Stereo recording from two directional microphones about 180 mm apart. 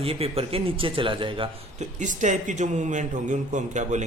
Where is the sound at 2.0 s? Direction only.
45° right (ahead or behind).